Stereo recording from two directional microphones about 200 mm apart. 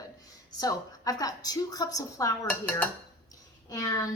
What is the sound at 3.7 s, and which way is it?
Speech, 15° left (ahead or behind).